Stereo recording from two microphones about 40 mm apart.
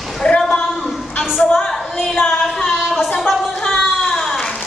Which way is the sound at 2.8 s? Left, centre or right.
Centre.